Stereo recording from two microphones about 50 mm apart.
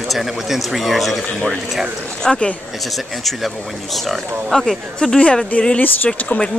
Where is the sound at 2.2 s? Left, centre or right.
Centre.